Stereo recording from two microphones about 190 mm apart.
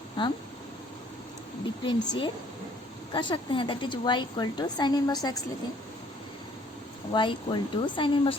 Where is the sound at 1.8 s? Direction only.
25° left (ahead or behind).